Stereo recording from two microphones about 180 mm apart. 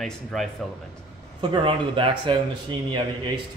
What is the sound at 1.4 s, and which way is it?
Speech, 30° right (ahead or behind).